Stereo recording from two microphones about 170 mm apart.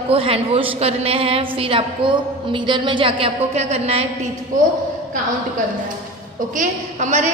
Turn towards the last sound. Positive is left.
turn(degrees=-45)  # may be behind; listen again after turning